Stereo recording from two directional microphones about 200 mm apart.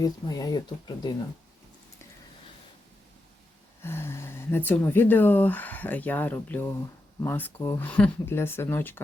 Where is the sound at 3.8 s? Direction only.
10° left (ahead or behind).